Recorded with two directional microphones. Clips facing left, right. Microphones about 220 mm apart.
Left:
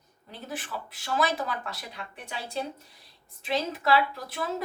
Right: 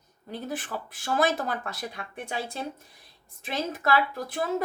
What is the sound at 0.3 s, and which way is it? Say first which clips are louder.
A woman's voice: right 4 dB; 45° right (ahead or behind).